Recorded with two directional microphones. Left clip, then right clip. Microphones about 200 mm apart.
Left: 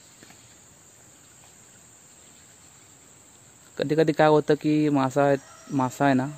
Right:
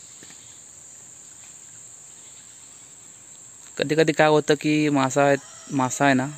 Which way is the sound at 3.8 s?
Centre (ahead or behind).